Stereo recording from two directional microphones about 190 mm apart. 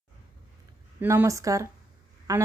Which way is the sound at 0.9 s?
15° right (ahead or behind).